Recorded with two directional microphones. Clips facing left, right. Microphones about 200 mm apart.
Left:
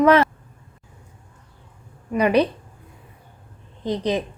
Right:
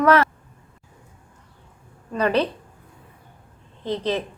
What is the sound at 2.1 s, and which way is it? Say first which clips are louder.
Speech: left 3 dB; 15° left (ahead or behind).